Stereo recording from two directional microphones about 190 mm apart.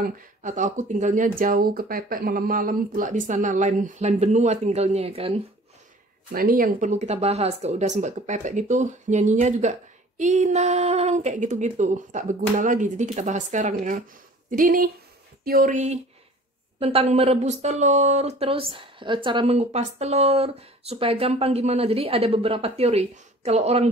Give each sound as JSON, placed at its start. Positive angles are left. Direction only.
{"t": 0.0, "sound": "speech", "side_deg": -40}
{"t": 6.3, "sound": "speech", "side_deg": -50}